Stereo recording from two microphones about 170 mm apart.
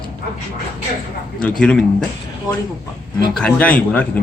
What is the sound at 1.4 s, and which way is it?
Speech, 5° left (ahead or behind).